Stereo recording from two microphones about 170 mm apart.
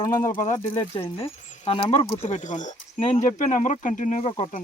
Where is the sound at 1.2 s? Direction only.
35° left (ahead or behind).